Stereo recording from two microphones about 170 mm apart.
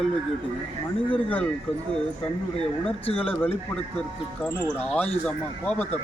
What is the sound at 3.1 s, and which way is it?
Speech, 35° left (ahead or behind).